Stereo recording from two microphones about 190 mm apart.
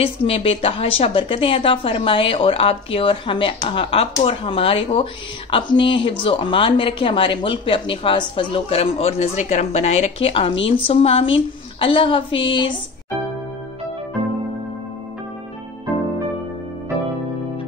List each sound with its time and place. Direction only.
0.0 s a woman's voice: 30° left (ahead or behind)